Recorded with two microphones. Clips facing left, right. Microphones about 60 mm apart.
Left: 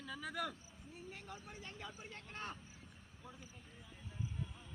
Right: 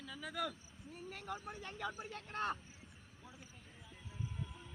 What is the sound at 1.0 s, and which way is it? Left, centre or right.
Speech, right.